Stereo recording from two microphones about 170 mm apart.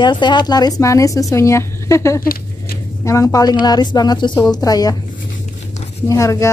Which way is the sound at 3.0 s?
20° left (ahead or behind).